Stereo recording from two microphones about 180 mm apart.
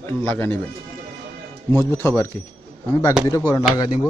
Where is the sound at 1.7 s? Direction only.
15° left (ahead or behind).